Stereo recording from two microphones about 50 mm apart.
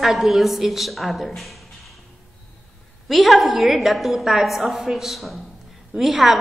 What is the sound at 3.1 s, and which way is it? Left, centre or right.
A woman's voice, centre.